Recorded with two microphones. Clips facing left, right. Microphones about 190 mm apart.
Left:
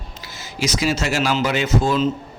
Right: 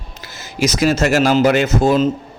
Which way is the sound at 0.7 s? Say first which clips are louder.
Right 6 dB; 50° right (ahead or behind).